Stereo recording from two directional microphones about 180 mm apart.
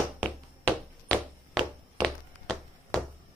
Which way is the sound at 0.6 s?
5° left (ahead or behind).